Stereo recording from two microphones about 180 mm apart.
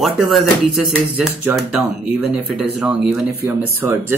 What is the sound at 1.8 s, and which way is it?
Speech, 5° right (ahead or behind).